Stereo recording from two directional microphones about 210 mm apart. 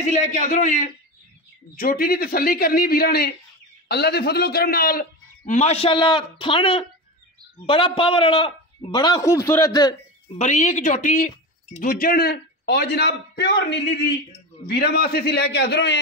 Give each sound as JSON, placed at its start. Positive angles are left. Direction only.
{"t": 0.0, "sound": "a man's voice", "side_deg": 35}
{"t": 5.4, "sound": "a man's voice", "side_deg": 30}
{"t": 10.3, "sound": "a man's voice", "side_deg": 35}